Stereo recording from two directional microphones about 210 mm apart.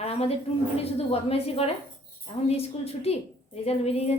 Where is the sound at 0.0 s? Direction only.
30° left (ahead or behind).